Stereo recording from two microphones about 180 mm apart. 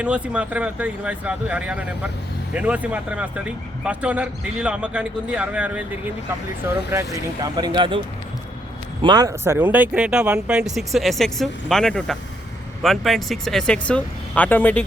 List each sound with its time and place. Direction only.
0.0 s a man's voice: 5° right (ahead or behind)